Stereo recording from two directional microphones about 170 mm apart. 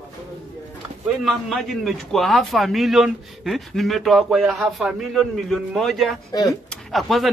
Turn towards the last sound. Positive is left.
turn(degrees=0)  # may be behind; listen again after turning